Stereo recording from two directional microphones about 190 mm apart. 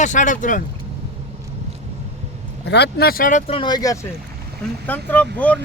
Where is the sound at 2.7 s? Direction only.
60° left (ahead or behind); by 4.0 s 20° left (ahead or behind).